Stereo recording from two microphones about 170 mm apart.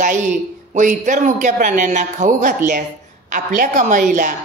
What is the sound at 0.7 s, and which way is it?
A woman's voice, 50° right (ahead or behind).